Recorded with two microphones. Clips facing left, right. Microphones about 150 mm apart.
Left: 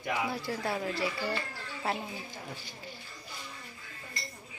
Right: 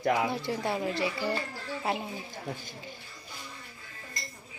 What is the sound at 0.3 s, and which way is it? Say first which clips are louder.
Speech: right 3 dB; 20° right (ahead or behind).